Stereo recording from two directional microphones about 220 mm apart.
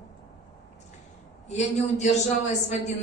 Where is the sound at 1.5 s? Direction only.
30° left (ahead or behind).